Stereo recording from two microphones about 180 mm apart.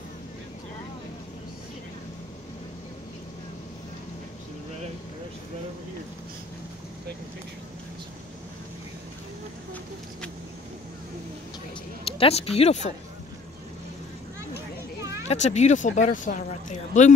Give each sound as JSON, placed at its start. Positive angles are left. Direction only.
{"t": 12.0, "sound": "speech", "side_deg": 30}
{"t": 15.2, "sound": "speech", "side_deg": 40}